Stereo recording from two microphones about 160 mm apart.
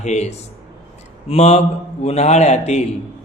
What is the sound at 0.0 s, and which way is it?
Mantra, 45° left (ahead or behind).